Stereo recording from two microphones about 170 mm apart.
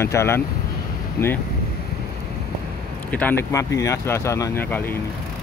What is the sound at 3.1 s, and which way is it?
Speech, 10° left (ahead or behind).